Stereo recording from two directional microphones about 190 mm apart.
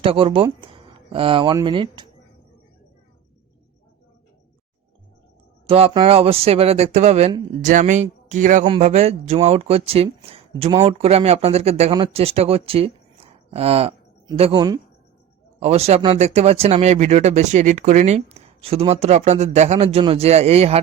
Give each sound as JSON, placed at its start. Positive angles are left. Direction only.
{"t": 0.0, "sound": "speech", "side_deg": -30}
{"t": 5.6, "sound": "speech", "side_deg": -30}